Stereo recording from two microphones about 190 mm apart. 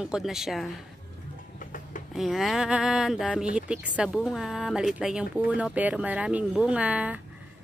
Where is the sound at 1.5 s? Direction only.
45° left (ahead or behind).